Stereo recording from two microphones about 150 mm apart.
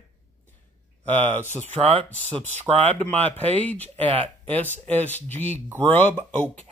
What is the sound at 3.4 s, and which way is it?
Speech, 10° left (ahead or behind).